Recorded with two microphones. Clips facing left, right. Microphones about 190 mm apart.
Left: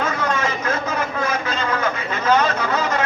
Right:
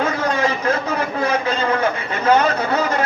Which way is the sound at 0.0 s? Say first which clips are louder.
Right 3 dB; 35° right (ahead or behind).